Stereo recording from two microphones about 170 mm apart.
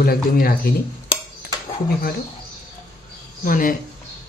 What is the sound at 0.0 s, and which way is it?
Speech, 60° left (ahead or behind).